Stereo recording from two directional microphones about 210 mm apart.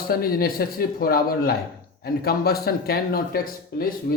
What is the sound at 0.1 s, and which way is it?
Speech, 45° left (ahead or behind).